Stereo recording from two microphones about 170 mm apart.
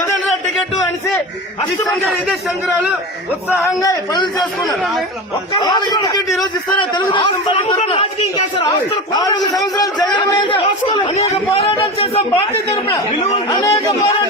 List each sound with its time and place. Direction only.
3.5 s a man's voice: 20° left (ahead or behind)
13.5 s a man's voice: 20° left (ahead or behind)